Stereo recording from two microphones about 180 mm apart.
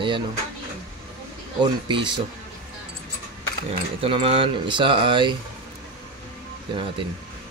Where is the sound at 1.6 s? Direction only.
25° right (ahead or behind).